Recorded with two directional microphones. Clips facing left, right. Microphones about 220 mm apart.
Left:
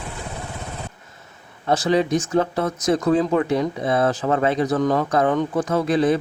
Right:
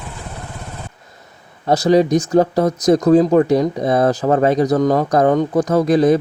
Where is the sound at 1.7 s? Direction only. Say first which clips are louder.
Right 6 dB; 40° right (ahead or behind).